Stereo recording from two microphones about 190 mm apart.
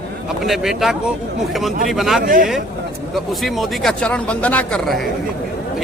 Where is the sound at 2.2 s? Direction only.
45° right (ahead or behind).